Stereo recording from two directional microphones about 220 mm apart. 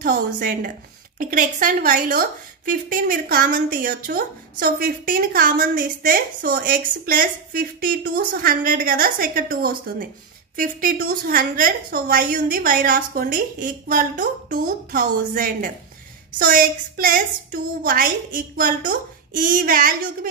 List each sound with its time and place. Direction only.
0.0 s a woman's voice: 40° right (ahead or behind)